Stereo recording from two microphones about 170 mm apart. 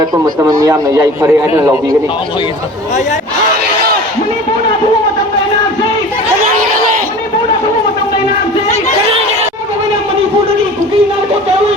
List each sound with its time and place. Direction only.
0.0 s a man's voice: 25° right (ahead or behind)